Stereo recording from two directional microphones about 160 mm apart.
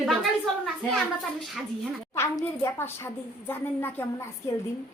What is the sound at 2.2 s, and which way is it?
A woman's voice, 15° left (ahead or behind).